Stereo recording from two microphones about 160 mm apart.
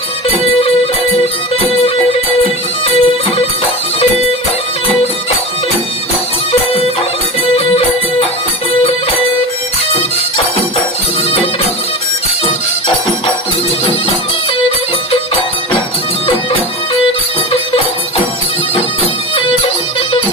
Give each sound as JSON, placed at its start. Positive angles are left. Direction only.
{"t": 0.3, "sound": "music", "side_deg": 40}
{"t": 7.5, "sound": "music", "side_deg": 40}
{"t": 16.2, "sound": "music", "side_deg": 35}